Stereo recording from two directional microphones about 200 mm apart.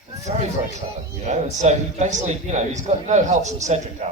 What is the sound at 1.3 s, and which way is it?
A man's voice, 35° right (ahead or behind).